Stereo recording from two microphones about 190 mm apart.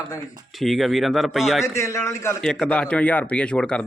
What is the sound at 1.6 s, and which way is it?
Speech, 15° left (ahead or behind).